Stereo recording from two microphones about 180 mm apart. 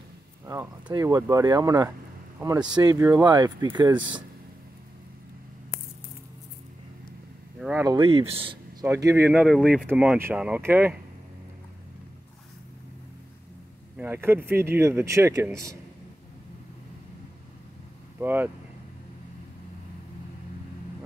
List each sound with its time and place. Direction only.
0.5 s speech: 20° right (ahead or behind)
7.8 s speech: 25° right (ahead or behind)
8.8 s speech: 15° right (ahead or behind)
13.9 s speech: 10° right (ahead or behind)
18.2 s speech: 10° right (ahead or behind)